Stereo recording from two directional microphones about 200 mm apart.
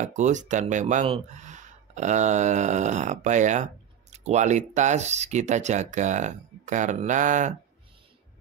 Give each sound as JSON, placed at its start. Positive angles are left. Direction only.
{"t": 0.0, "sound": "speech", "side_deg": -35}